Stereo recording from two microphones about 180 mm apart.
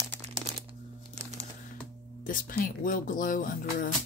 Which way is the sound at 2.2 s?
50° left (ahead or behind).